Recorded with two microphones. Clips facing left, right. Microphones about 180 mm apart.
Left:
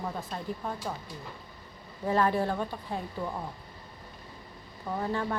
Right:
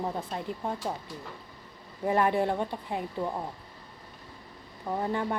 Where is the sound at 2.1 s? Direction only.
20° right (ahead or behind).